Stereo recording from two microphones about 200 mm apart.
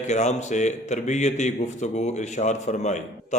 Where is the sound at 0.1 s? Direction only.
35° left (ahead or behind).